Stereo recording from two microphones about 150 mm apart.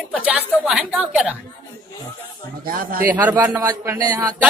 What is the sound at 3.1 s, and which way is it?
Speech, 10° right (ahead or behind).